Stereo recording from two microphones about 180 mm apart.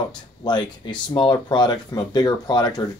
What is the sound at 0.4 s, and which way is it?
Speech, 25° left (ahead or behind).